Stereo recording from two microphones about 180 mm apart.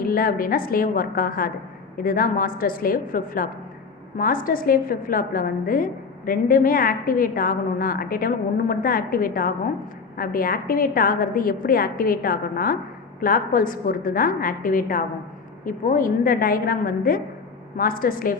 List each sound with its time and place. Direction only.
0.0 s a woman's voice: 55° left (ahead or behind)